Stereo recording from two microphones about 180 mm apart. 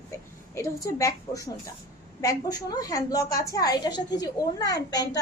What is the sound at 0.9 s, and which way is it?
A woman's voice, 20° left (ahead or behind).